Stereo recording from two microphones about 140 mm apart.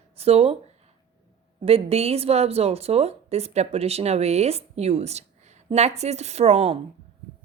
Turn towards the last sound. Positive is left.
turn(degrees=-45)  # may be behind; listen again after turning